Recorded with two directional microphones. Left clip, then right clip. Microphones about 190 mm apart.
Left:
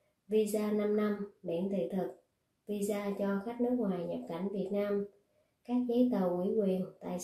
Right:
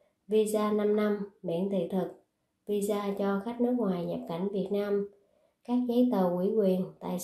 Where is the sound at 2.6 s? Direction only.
20° right (ahead or behind).